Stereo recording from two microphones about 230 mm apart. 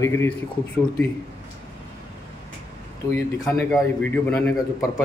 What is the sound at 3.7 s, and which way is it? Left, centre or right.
Speech, centre.